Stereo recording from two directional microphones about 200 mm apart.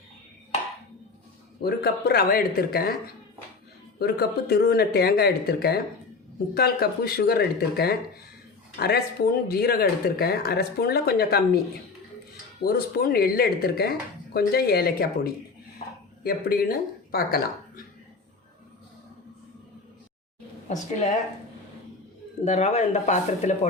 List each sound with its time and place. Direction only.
1.6 s speech: 50° left (ahead or behind)
3.9 s speech: 50° left (ahead or behind)
12.6 s speech: 50° left (ahead or behind)
15.8 s a sound: 30° left (ahead or behind)
16.2 s speech: 50° left (ahead or behind)
20.7 s speech: 40° left (ahead or behind)
22.4 s speech: 35° left (ahead or behind)